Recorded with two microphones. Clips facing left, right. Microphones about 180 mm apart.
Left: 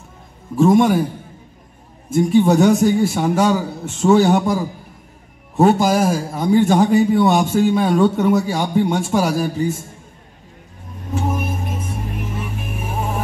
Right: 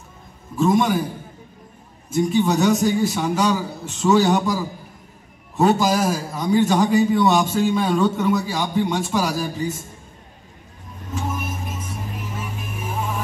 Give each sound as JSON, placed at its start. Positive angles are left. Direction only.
{"t": 0.6, "sound": "a man's voice", "side_deg": 55}
{"t": 2.1, "sound": "a man's voice", "side_deg": 55}
{"t": 5.6, "sound": "a man's voice", "side_deg": 50}
{"t": 11.2, "sound": "music", "side_deg": 55}